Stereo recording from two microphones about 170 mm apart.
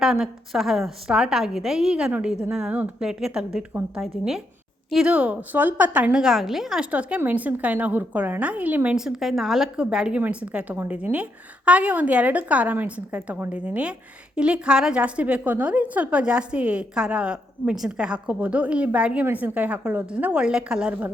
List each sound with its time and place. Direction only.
0.0 s a woman's voice: centre (ahead or behind)